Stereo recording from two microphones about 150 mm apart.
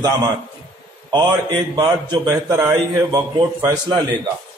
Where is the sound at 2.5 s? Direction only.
15° right (ahead or behind).